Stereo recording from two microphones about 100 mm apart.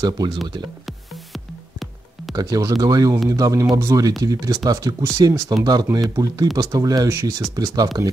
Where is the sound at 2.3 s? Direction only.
40° right (ahead or behind).